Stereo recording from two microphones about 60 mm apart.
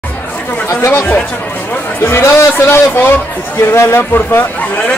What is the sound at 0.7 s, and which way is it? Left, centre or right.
Speech, left.